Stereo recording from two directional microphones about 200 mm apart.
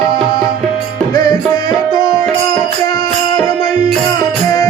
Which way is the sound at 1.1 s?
20° left (ahead or behind).